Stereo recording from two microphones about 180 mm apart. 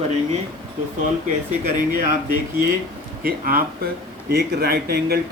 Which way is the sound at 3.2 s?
55° right (ahead or behind).